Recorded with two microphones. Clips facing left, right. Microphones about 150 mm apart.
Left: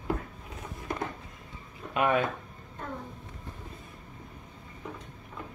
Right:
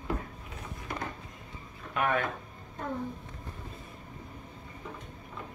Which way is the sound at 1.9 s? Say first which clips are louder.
Left 3 dB; 15° left (ahead or behind).